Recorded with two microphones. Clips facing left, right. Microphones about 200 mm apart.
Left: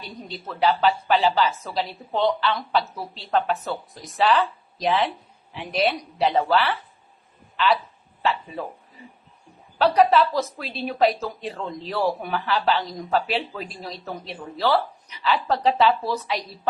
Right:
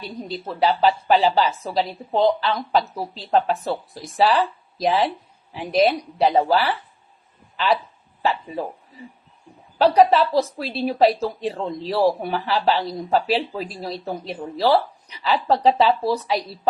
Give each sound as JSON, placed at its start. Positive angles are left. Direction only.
{"t": 0.3, "sound": "a woman's voice", "side_deg": -35}
{"t": 8.2, "sound": "a woman's voice", "side_deg": -35}
{"t": 9.8, "sound": "a woman's voice", "side_deg": -35}